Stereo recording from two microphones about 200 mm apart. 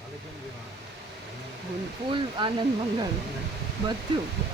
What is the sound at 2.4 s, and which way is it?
Speech, 25° right (ahead or behind).